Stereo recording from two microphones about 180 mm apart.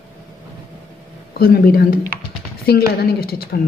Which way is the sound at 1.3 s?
55° left (ahead or behind).